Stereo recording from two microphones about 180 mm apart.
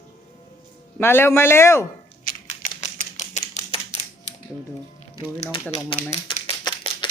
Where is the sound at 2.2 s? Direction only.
50° left (ahead or behind).